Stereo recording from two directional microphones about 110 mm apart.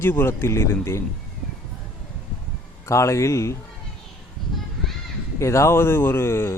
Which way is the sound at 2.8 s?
25° left (ahead or behind).